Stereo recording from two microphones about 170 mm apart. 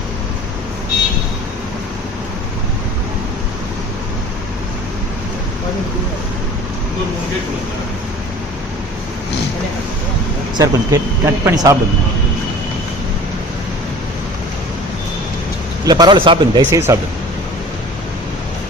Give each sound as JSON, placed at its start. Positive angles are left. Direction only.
{"t": 10.6, "sound": "speech", "side_deg": -15}
{"t": 15.9, "sound": "speech", "side_deg": -25}
{"t": 16.6, "sound": "speech", "side_deg": -15}